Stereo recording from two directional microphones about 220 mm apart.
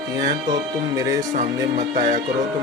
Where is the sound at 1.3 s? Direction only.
35° right (ahead or behind).